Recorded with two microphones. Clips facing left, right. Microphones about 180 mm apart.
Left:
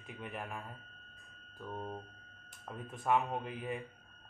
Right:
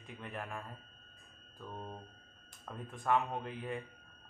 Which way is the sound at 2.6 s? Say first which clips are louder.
Left 1 dB; 5° left (ahead or behind).